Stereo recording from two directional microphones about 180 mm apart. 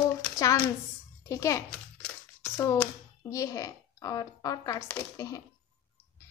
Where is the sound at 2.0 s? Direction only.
5° left (ahead or behind).